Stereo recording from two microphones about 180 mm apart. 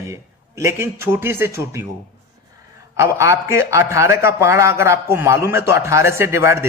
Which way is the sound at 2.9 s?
15° right (ahead or behind).